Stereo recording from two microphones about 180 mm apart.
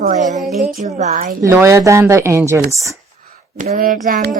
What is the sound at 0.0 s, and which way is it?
A woman's voice, 45° right (ahead or behind).